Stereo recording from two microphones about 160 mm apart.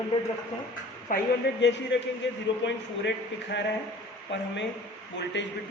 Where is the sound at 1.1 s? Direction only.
55° left (ahead or behind).